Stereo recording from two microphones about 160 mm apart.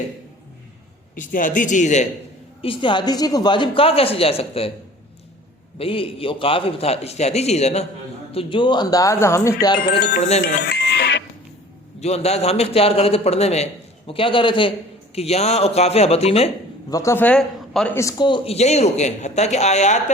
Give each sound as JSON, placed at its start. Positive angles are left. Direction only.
{"t": 1.1, "sound": "a man's voice", "side_deg": 55}
{"t": 2.6, "sound": "a woman's voice", "side_deg": 30}
{"t": 5.8, "sound": "a woman's voice", "side_deg": 35}
{"t": 10.2, "sound": "a man's voice", "side_deg": 45}
{"t": 10.6, "sound": "music", "side_deg": 90}
{"t": 11.9, "sound": "a woman's voice", "side_deg": 40}
{"t": 16.9, "sound": "a man's voice", "side_deg": 20}
{"t": 17.9, "sound": "speech", "side_deg": 20}
{"t": 18.3, "sound": "a man's voice", "side_deg": 40}